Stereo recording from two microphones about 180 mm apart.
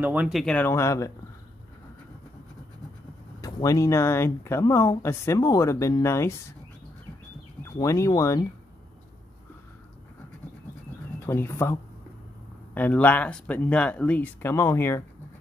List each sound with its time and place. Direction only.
0.0 s speech: 10° right (ahead or behind); by 1.1 s 15° left (ahead or behind)
3.3 s speech: 20° left (ahead or behind)
7.7 s speech: 15° left (ahead or behind)
11.2 s speech: 15° left (ahead or behind)